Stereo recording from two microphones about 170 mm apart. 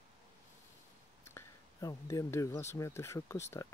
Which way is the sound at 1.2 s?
15° left (ahead or behind).